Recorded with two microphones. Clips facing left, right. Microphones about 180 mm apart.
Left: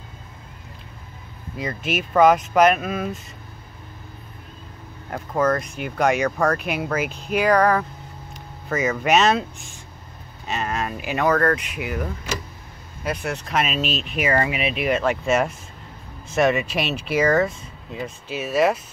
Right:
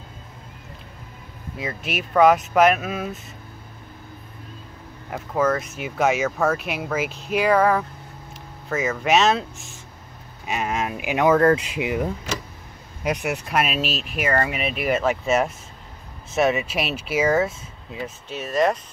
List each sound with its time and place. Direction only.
1.6 s speech: centre (ahead or behind)
5.1 s speech: 5° right (ahead or behind)
10.4 s speech: 10° right (ahead or behind); by 18.8 s 5° left (ahead or behind)